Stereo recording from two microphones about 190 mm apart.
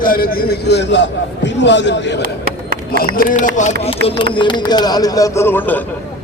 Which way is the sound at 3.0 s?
50° left (ahead or behind).